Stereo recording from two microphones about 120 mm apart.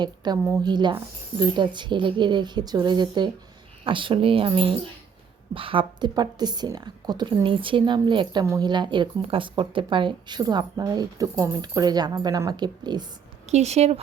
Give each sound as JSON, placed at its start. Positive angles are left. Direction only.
{"t": 0.2, "sound": "a woman's voice", "side_deg": -35}
{"t": 13.5, "sound": "speech", "side_deg": -65}